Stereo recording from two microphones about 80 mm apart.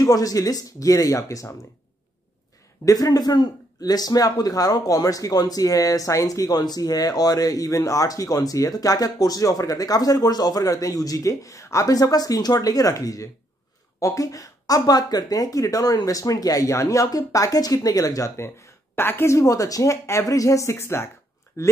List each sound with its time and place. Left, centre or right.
0.0 s speech: left
2.8 s speech: left
19.3 s speech: left